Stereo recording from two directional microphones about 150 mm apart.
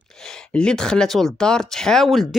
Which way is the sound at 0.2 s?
5° left (ahead or behind).